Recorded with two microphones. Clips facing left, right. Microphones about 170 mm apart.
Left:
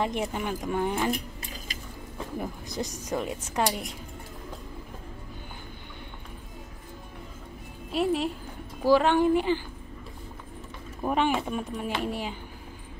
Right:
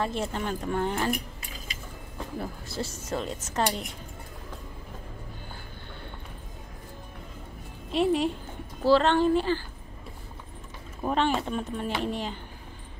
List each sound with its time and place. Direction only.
0.0 s speech: 15° left (ahead or behind)
2.3 s speech: 15° left (ahead or behind)
7.9 s speech: centre (ahead or behind)
11.0 s speech: 10° left (ahead or behind)